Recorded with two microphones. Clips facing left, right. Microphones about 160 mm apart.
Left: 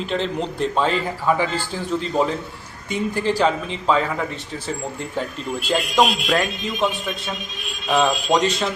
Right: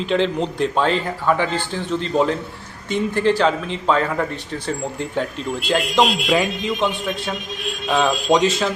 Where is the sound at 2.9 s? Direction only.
5° left (ahead or behind).